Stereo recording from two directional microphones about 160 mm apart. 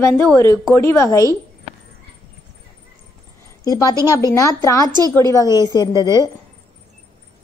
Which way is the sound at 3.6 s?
25° left (ahead or behind).